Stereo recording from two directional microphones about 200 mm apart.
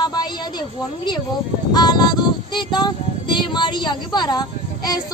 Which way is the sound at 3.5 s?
20° left (ahead or behind).